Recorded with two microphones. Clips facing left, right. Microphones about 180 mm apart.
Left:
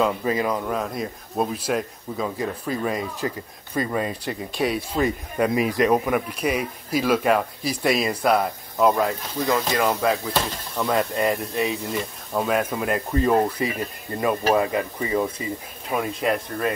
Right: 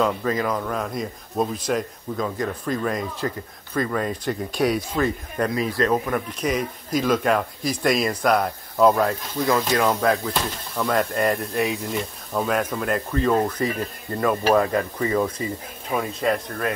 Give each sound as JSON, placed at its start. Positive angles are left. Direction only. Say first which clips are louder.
{"t": 0.2, "sound": "speech", "louder": "even", "side_deg": 15}
{"t": 5.0, "sound": "speech", "louder": "left 5 dB", "side_deg": 15}